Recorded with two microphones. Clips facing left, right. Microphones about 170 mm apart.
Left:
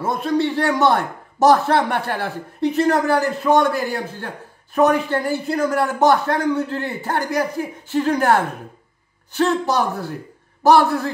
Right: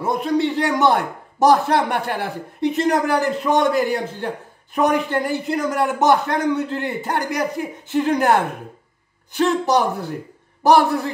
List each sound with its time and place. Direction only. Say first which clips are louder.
0.0 s a man's voice: even; 15° right (ahead or behind)